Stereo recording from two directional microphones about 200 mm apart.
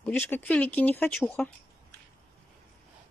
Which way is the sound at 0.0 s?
10° left (ahead or behind).